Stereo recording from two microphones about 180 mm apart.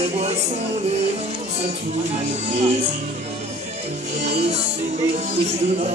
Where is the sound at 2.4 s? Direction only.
35° right (ahead or behind).